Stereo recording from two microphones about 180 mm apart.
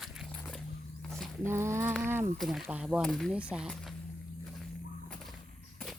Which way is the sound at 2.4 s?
Centre (ahead or behind).